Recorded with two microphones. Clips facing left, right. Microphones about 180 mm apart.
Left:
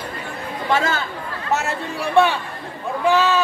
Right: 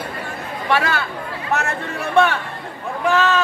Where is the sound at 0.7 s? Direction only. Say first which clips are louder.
Right 1 dB; 20° left (ahead or behind).